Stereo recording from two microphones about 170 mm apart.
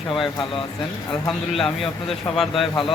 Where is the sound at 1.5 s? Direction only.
5° left (ahead or behind).